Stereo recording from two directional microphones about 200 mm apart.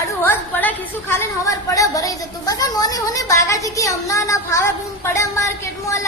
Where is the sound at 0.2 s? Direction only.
10° left (ahead or behind).